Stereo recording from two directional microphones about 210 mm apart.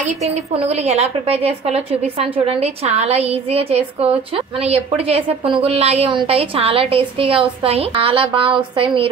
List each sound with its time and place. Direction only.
0.8 s a woman's voice: 30° right (ahead or behind)